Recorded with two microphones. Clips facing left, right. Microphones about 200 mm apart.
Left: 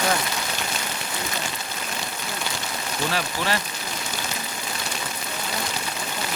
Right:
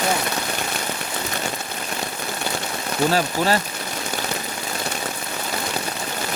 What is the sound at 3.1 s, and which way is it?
Speech, 40° right (ahead or behind).